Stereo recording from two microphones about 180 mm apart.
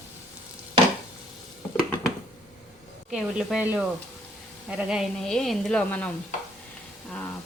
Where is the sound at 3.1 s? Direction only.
5° right (ahead or behind).